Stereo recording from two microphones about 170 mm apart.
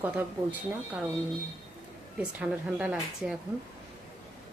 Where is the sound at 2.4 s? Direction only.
5° right (ahead or behind).